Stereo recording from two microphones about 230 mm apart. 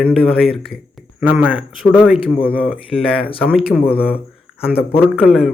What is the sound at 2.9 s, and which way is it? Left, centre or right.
Speech, left.